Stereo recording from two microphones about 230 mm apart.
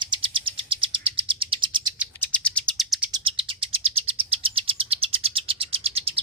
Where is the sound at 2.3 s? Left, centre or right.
Centre.